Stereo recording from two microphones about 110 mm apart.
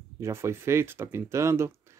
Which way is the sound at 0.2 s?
25° right (ahead or behind).